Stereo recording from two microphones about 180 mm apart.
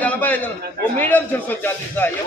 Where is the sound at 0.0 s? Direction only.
10° left (ahead or behind).